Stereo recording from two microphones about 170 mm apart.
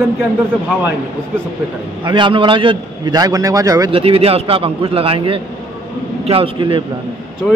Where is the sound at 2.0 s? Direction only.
30° right (ahead or behind).